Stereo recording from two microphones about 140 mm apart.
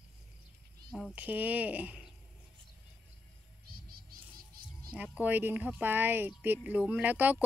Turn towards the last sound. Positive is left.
turn(degrees=-10)  # may be behind; listen again after turning